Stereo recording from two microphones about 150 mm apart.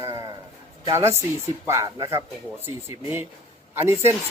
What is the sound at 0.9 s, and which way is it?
Speech, 20° right (ahead or behind).